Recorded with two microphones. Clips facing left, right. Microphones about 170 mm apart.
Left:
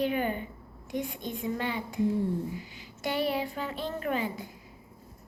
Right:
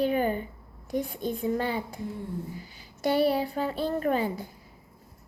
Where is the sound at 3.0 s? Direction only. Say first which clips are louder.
Right 5 dB; 35° right (ahead or behind).